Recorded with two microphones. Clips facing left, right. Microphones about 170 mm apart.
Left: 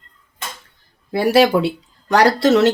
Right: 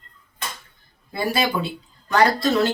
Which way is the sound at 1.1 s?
75° left (ahead or behind).